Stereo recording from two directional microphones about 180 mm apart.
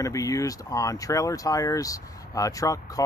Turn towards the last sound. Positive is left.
turn(degrees=20)  # may be behind; listen again after turning